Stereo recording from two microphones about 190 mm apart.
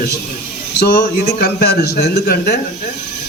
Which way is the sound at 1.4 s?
55° left (ahead or behind).